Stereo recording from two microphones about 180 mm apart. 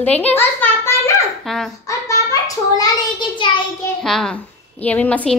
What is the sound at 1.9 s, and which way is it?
Child singing, 20° left (ahead or behind).